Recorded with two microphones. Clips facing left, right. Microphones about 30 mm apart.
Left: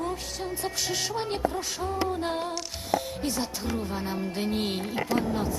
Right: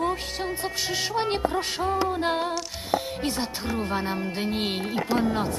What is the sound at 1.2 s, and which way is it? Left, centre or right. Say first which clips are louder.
Speech: right 4 dB; right.